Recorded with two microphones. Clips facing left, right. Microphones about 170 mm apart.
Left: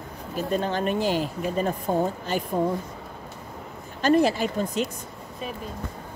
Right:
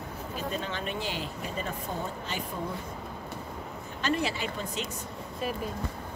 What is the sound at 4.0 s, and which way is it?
Speech, 45° left (ahead or behind).